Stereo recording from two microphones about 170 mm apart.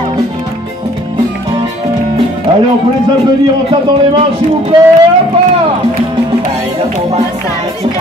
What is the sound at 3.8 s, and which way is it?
Speech, 35° right (ahead or behind).